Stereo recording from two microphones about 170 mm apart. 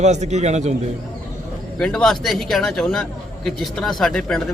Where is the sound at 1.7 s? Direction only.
5° left (ahead or behind).